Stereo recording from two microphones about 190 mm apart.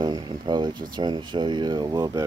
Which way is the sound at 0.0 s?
20° right (ahead or behind).